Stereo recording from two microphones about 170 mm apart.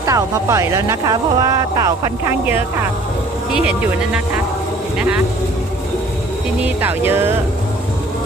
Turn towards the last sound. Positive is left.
turn(degrees=-15)  # may be behind; listen again after turning